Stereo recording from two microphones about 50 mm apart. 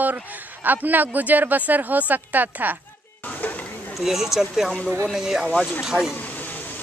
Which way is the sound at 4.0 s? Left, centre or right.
Centre.